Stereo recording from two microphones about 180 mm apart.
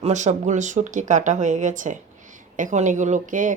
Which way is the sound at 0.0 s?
40° right (ahead or behind).